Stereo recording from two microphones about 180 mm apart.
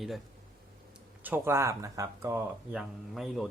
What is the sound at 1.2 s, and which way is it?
Speech, 10° right (ahead or behind).